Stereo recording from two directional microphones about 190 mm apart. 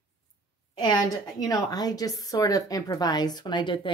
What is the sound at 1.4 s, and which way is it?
Speech, 20° left (ahead or behind).